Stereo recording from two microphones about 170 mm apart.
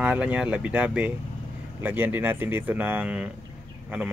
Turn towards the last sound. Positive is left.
turn(degrees=-5)  # may be behind; listen again after turning